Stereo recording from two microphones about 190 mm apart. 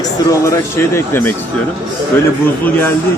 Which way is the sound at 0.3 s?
15° left (ahead or behind).